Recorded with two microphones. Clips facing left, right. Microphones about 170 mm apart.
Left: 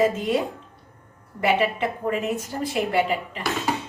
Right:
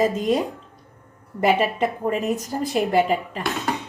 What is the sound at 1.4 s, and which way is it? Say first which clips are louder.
A woman's voice: right 2 dB; 40° right (ahead or behind).